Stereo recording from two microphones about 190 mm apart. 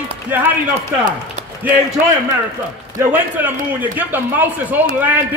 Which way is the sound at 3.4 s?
10° right (ahead or behind).